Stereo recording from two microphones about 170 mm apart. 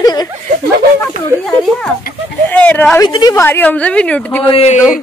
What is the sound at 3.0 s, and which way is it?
Speech, 25° left (ahead or behind).